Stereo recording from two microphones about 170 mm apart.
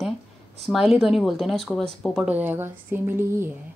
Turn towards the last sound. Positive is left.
turn(degrees=-15)  # may be behind; listen again after turning